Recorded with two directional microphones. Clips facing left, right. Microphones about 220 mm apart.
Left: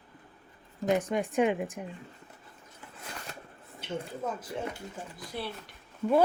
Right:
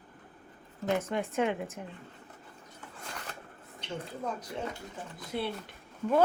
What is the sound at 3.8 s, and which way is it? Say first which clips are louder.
Speech: left 3 dB; 5° left (ahead or behind).